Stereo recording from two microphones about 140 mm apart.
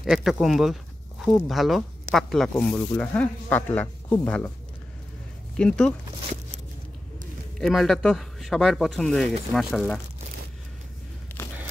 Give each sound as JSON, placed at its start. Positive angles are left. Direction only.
{"t": 0.0, "sound": "speech", "side_deg": -5}
{"t": 5.6, "sound": "speech", "side_deg": 5}
{"t": 7.5, "sound": "speech", "side_deg": 0}
{"t": 11.4, "sound": "a sound", "side_deg": 15}